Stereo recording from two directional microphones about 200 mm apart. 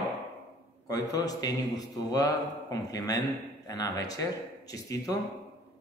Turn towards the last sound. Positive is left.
turn(degrees=15)  # may be behind; listen again after turning